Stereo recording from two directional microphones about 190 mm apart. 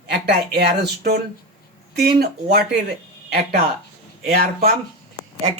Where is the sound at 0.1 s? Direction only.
55° right (ahead or behind).